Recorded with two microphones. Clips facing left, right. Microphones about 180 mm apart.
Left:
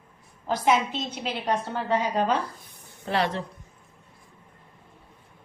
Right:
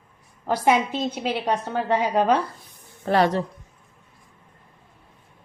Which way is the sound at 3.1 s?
45° right (ahead or behind).